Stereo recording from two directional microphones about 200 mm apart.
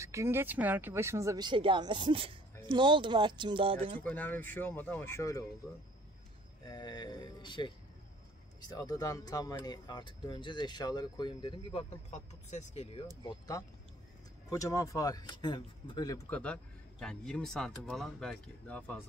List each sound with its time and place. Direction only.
0.0 s speech: 15° right (ahead or behind)
4.0 s speech: 10° left (ahead or behind)
6.6 s speech: 20° left (ahead or behind)
12.1 s speech: 35° left (ahead or behind)
13.2 s speech: 20° left (ahead or behind)
16.3 s speech: 5° left (ahead or behind)